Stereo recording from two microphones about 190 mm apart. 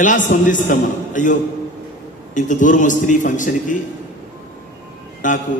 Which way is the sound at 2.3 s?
40° left (ahead or behind).